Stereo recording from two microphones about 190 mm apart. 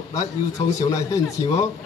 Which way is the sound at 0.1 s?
15° left (ahead or behind).